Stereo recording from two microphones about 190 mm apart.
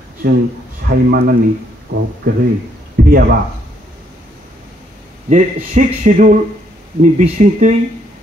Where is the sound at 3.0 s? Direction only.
50° right (ahead or behind).